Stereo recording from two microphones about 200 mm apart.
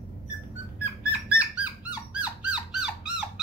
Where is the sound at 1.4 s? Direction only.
5° right (ahead or behind).